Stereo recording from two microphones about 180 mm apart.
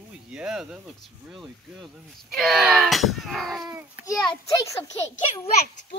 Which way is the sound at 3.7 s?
15° right (ahead or behind).